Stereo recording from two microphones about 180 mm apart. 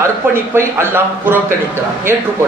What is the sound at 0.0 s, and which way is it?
A man's voice, 15° right (ahead or behind).